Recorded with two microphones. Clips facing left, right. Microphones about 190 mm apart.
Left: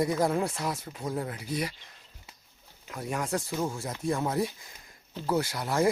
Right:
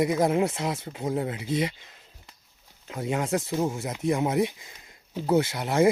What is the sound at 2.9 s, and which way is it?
Speech, 25° right (ahead or behind).